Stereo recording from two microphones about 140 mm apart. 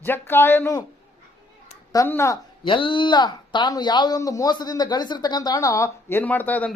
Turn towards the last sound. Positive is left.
turn(degrees=10)  # may be behind; listen again after turning